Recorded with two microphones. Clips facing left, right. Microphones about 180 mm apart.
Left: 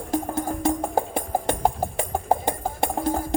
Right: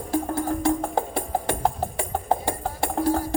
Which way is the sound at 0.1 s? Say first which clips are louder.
Right 1 dB; 15° left (ahead or behind).